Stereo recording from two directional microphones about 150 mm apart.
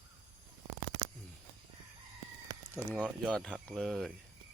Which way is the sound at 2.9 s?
5° right (ahead or behind).